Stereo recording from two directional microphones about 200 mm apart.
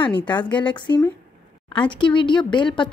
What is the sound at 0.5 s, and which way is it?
Speech, 5° left (ahead or behind).